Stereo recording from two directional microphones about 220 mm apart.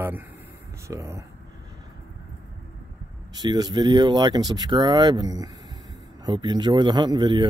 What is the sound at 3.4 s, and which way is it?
Speech, 20° right (ahead or behind).